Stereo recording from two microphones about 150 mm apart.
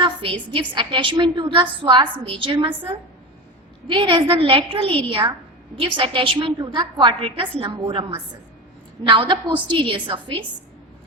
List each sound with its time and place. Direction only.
0.0 s a sound: 35° right (ahead or behind)
0.5 s a woman's voice: 30° right (ahead or behind)
9.0 s a woman's voice: 35° right (ahead or behind)